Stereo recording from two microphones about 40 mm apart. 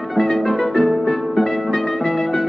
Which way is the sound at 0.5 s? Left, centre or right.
Centre.